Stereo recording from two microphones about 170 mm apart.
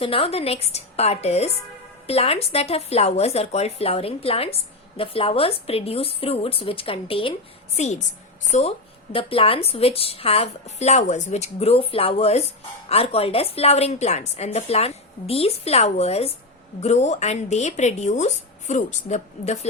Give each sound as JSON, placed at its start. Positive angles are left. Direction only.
{"t": 0.0, "sound": "a woman's voice", "side_deg": 35}
{"t": 7.8, "sound": "a woman's voice", "side_deg": 45}